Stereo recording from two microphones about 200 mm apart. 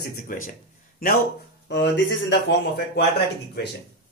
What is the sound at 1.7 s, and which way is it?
Speech, 60° left (ahead or behind).